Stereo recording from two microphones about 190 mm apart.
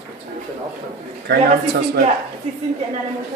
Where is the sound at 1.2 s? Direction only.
55° right (ahead or behind).